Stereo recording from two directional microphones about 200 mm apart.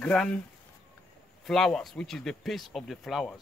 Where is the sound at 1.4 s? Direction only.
Centre (ahead or behind).